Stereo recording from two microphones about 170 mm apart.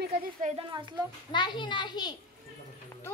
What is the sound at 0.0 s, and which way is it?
Speech, 60° right (ahead or behind).